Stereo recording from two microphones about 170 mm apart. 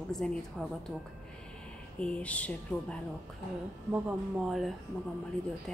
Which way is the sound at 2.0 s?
5° left (ahead or behind).